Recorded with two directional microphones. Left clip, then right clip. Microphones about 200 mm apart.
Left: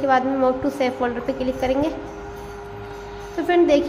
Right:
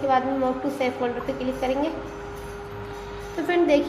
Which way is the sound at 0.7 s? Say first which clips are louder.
Left 3 dB; 25° left (ahead or behind).